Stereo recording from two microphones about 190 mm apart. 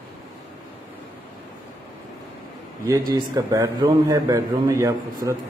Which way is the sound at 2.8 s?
20° right (ahead or behind).